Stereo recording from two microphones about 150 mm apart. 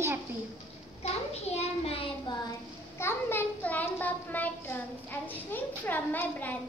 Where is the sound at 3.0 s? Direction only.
15° left (ahead or behind).